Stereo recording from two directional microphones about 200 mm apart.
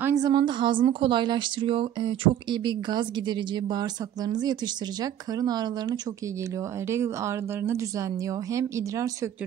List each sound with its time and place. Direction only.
0.0 s a woman's voice: 20° right (ahead or behind)